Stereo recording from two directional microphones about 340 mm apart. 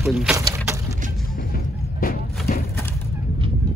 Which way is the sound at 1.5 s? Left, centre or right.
Left.